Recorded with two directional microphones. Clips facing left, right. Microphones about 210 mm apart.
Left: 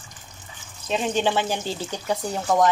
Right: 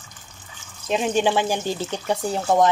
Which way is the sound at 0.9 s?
10° right (ahead or behind).